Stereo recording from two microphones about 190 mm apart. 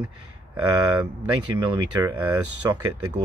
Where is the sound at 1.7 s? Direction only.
20° right (ahead or behind).